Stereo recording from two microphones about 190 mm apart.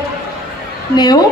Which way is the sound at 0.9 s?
20° left (ahead or behind).